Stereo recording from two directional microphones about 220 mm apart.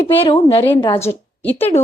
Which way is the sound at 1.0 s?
10° left (ahead or behind).